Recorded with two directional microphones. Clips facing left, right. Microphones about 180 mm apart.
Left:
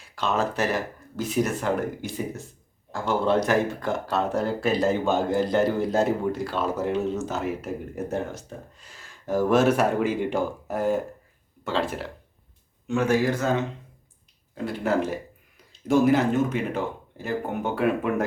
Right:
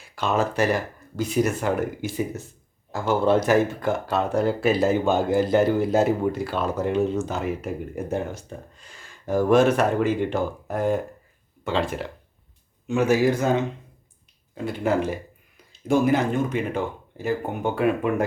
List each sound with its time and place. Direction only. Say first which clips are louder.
0.2 s speech: right 2 dB; centre (ahead or behind)
14.5 s speech: right 1 dB; centre (ahead or behind)